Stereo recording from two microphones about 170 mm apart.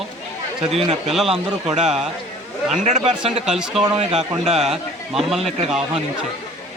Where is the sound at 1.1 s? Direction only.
Centre (ahead or behind).